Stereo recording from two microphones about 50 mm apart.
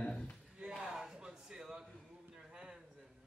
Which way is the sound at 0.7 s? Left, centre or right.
Centre.